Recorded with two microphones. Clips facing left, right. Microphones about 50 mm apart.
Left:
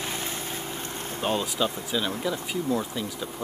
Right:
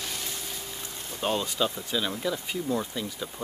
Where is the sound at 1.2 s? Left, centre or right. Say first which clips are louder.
Left 1 dB; centre.